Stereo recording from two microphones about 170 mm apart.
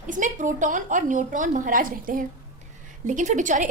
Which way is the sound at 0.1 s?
50° right (ahead or behind).